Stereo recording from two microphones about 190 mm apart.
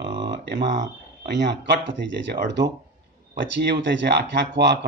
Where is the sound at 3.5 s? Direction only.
65° right (ahead or behind).